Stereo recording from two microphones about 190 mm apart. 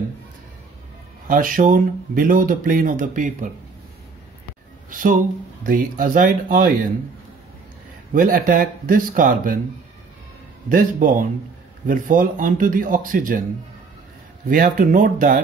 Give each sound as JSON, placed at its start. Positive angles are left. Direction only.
{"t": 1.2, "sound": "speech", "side_deg": -45}
{"t": 4.8, "sound": "a sound", "side_deg": -45}
{"t": 5.6, "sound": "speech", "side_deg": -45}
{"t": 8.1, "sound": "speech", "side_deg": -45}
{"t": 10.7, "sound": "speech", "side_deg": -45}
{"t": 14.5, "sound": "speech", "side_deg": -45}